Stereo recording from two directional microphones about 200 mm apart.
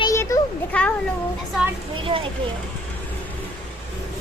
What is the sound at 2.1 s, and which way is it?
Speech, 25° right (ahead or behind).